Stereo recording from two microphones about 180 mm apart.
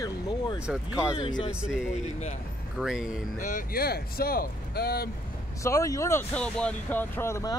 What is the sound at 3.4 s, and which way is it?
Speech, 45° left (ahead or behind).